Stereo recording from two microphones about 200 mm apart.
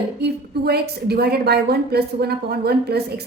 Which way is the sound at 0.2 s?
55° right (ahead or behind).